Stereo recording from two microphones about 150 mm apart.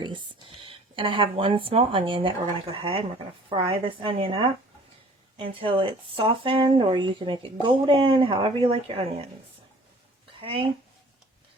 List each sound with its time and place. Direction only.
0.4 s speech: 35° right (ahead or behind)